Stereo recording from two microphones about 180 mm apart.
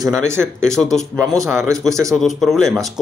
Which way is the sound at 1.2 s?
15° right (ahead or behind).